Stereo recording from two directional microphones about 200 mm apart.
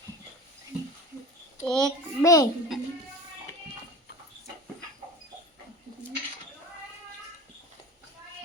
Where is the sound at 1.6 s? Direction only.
5° left (ahead or behind).